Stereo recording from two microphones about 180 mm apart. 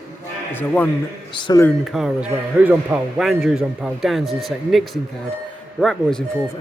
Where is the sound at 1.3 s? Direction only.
25° left (ahead or behind).